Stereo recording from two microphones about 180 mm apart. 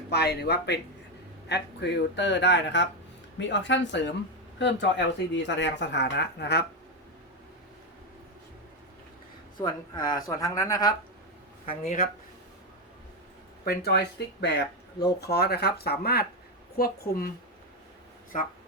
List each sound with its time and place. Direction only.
0.1 s speech: 65° left (ahead or behind)
9.6 s speech: 25° left (ahead or behind)
11.7 s speech: 40° left (ahead or behind)
13.7 s speech: 65° left (ahead or behind)
18.3 s speech: 45° left (ahead or behind)